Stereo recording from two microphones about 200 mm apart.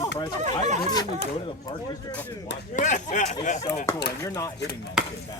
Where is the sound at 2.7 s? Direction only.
40° left (ahead or behind).